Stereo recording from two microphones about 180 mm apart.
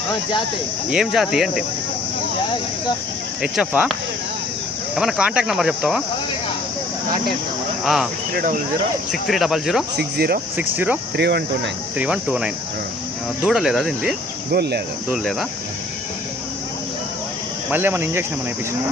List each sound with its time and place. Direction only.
0.9 s speech: centre (ahead or behind)
3.4 s speech: 5° right (ahead or behind)
4.9 s speech: centre (ahead or behind)
8.4 s speech: 50° right (ahead or behind)
9.2 s speech: centre (ahead or behind)
10.0 s speech: 60° right (ahead or behind)
10.6 s speech: 10° right (ahead or behind)
11.2 s speech: 65° right (ahead or behind)
11.9 s speech: 5° right (ahead or behind)
14.5 s speech: 65° right (ahead or behind)
15.1 s speech: centre (ahead or behind)
17.7 s speech: 10° right (ahead or behind)